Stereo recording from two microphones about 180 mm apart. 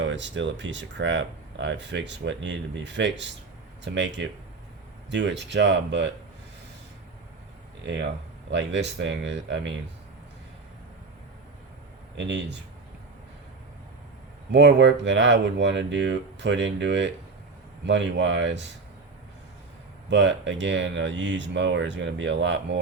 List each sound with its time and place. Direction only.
0.0 s speech: 85° right
8.4 s speech: 80° right
12.1 s speech: 80° right
14.5 s speech: 80° right
20.1 s speech: 85° right